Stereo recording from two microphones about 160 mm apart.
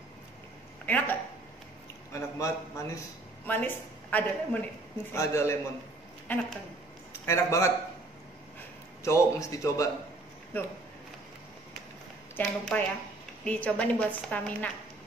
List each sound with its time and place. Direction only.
0.8 s speech: 10° left (ahead or behind)
2.1 s a man's voice: 20° left (ahead or behind)
9.0 s a man's voice: 20° left (ahead or behind)
12.4 s a woman's voice: 10° left (ahead or behind)